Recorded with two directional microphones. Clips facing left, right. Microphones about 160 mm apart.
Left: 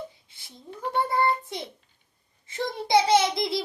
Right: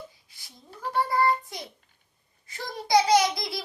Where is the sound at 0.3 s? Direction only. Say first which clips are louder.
Left 1 dB; 25° left (ahead or behind).